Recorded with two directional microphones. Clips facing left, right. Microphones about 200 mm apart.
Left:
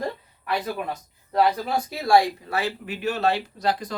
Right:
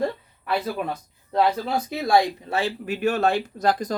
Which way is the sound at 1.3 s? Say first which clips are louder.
Even; 25° right (ahead or behind).